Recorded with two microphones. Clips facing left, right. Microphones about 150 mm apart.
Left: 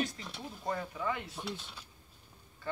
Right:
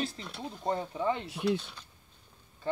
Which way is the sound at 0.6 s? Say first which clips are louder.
Right 5 dB; 25° right (ahead or behind).